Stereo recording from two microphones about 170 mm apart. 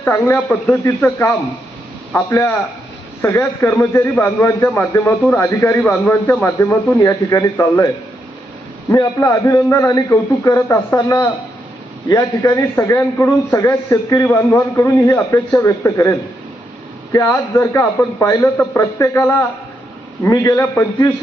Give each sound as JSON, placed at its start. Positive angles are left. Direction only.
{"t": 0.0, "sound": "a man's voice", "side_deg": 10}